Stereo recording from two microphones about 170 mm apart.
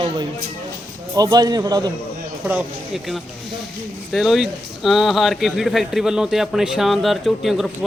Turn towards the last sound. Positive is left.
turn(degrees=0)  # may be behind; listen again after turning